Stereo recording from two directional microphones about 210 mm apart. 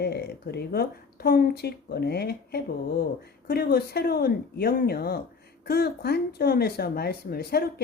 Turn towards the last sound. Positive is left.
turn(degrees=45)  # may be behind; listen again after turning